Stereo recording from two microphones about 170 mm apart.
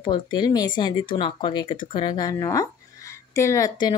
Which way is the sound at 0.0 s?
25° left (ahead or behind).